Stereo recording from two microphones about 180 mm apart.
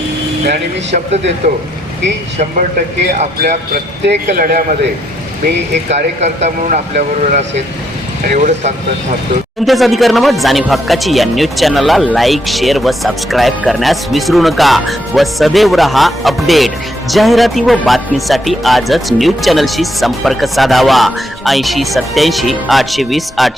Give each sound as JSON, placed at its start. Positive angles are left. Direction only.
{"t": 2.4, "sound": "speech", "side_deg": -45}
{"t": 5.9, "sound": "speech", "side_deg": -40}
{"t": 9.6, "sound": "speech", "side_deg": 0}